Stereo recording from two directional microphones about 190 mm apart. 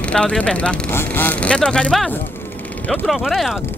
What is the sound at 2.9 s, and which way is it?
Speech, centre (ahead or behind).